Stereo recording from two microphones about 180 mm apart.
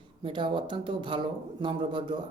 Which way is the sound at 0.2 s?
25° right (ahead or behind).